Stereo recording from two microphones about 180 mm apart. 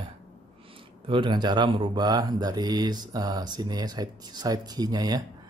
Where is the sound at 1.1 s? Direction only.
25° right (ahead or behind).